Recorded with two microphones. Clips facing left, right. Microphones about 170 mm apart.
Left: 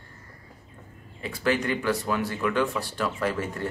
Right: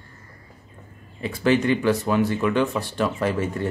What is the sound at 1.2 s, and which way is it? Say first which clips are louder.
Speech: right 6 dB; 25° right (ahead or behind).